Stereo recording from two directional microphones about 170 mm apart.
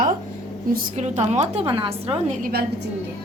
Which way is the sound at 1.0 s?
40° right (ahead or behind).